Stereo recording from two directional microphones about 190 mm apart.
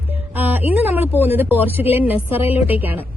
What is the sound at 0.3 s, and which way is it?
A woman's voice, 10° right (ahead or behind).